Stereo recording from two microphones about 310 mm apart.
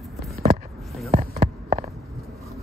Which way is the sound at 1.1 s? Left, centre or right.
Right.